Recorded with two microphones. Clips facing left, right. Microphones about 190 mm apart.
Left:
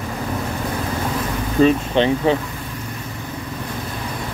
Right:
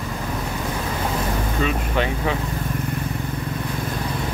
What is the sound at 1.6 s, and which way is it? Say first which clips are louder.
Speech: left 9 dB; 30° left (ahead or behind).